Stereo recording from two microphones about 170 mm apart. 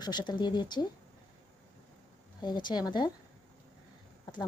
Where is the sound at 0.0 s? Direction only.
25° left (ahead or behind).